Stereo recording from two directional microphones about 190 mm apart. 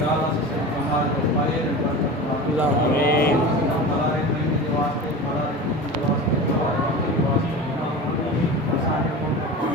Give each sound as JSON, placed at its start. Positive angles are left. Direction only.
{"t": 3.1, "sound": "speech", "side_deg": 55}